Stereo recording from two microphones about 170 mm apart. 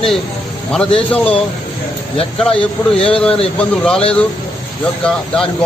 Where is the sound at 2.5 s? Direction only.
35° left (ahead or behind).